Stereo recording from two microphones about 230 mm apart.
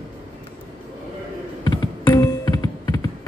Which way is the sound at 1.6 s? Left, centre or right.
Centre.